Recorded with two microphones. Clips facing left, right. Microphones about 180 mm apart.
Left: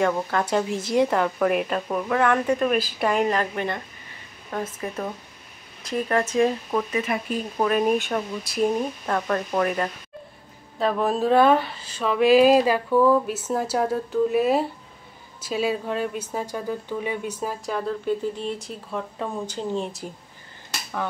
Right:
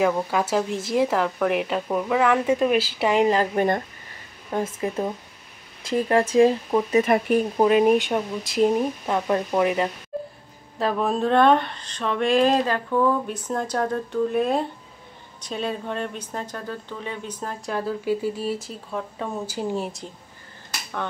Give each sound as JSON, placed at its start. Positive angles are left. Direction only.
{"t": 0.0, "sound": "speech", "side_deg": -5}
{"t": 3.1, "sound": "speech", "side_deg": -25}
{"t": 3.5, "sound": "speech", "side_deg": -45}
{"t": 4.5, "sound": "speech", "side_deg": -25}
{"t": 6.9, "sound": "speech", "side_deg": -45}
{"t": 7.5, "sound": "speech", "side_deg": -20}
{"t": 10.8, "sound": "speech", "side_deg": 0}